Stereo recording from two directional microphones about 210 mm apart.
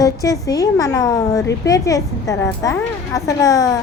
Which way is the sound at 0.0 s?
15° left (ahead or behind).